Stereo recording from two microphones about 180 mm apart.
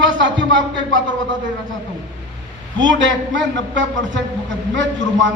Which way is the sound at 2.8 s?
90° right.